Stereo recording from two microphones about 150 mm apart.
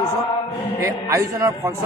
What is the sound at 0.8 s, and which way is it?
Speech, 20° right (ahead or behind).